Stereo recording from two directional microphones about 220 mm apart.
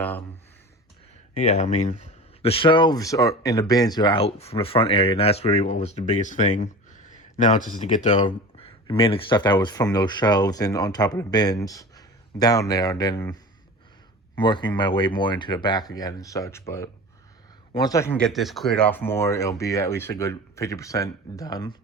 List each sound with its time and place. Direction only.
1.4 s speech: 30° left (ahead or behind)
14.4 s speech: 20° left (ahead or behind)